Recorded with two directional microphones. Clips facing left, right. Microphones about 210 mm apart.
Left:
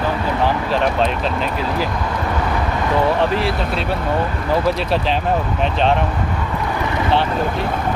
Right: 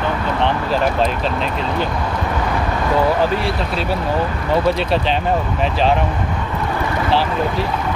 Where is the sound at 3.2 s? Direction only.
Centre (ahead or behind).